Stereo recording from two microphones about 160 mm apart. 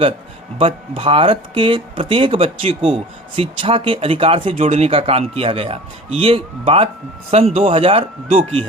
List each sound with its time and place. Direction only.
0.6 s speech: 35° right (ahead or behind)